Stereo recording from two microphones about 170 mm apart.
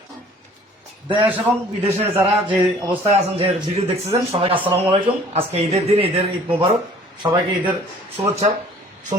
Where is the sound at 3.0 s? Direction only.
35° right (ahead or behind).